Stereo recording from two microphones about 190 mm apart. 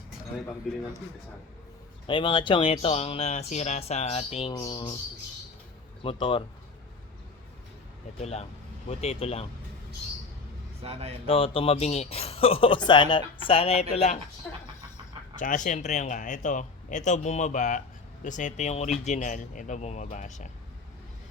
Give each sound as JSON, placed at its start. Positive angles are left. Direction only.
{"t": 2.0, "sound": "speech", "side_deg": 25}
{"t": 4.5, "sound": "speech", "side_deg": 25}
{"t": 6.0, "sound": "speech", "side_deg": 30}
{"t": 8.2, "sound": "speech", "side_deg": 35}
{"t": 10.8, "sound": "speech", "side_deg": -30}
{"t": 11.3, "sound": "speech", "side_deg": 30}
{"t": 15.4, "sound": "speech", "side_deg": 40}